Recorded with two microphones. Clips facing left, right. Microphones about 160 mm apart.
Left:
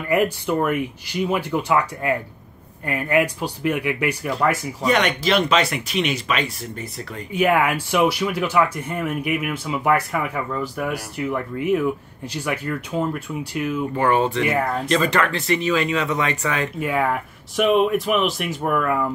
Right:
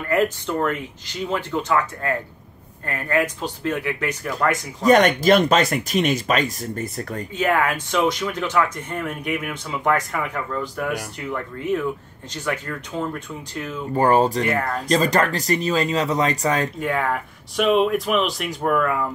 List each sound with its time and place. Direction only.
0.1 s speech: 10° left (ahead or behind)
4.8 s speech: 45° right (ahead or behind)
7.3 s speech: 10° left (ahead or behind)
13.9 s speech: 40° right (ahead or behind)
16.9 s speech: 5° left (ahead or behind)